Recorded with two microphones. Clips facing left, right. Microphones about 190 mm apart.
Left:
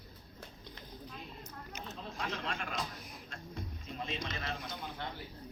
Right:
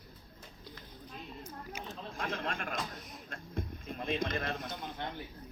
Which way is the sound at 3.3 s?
55° right (ahead or behind).